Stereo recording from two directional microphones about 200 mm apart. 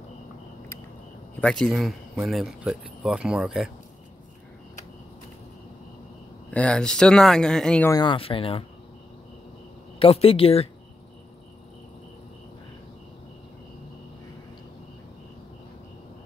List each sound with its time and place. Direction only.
1.4 s speech: 5° left (ahead or behind)
6.5 s speech: 5° left (ahead or behind)
7.9 s speech: 25° left (ahead or behind)
9.9 s speech: 30° left (ahead or behind)